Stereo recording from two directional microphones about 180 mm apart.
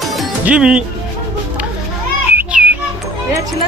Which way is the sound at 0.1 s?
Centre (ahead or behind).